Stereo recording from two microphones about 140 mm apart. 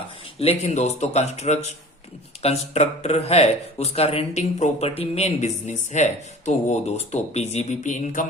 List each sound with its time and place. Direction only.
0.3 s speech: 45° left (ahead or behind)